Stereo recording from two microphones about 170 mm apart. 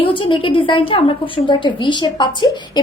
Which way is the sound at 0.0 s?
30° left (ahead or behind).